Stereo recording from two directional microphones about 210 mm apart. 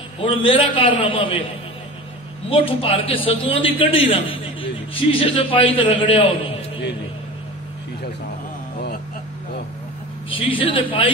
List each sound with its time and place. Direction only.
0.2 s a man's voice: 25° left (ahead or behind)
2.5 s a man's voice: 25° left (ahead or behind)
10.3 s a man's voice: 25° left (ahead or behind)